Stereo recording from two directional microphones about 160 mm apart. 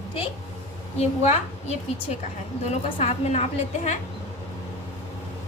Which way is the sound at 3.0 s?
45° left (ahead or behind).